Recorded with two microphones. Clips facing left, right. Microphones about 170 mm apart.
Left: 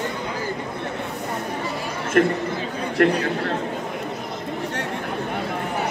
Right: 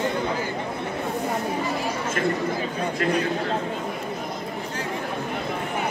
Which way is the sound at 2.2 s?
60° left (ahead or behind).